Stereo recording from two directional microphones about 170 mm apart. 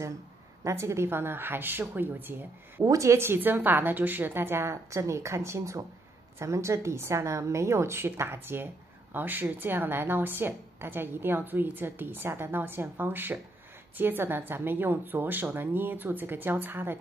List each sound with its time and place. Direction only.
0.7 s a woman's voice: 15° right (ahead or behind)